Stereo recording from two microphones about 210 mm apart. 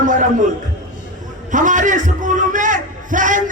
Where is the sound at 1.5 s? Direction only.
40° right (ahead or behind).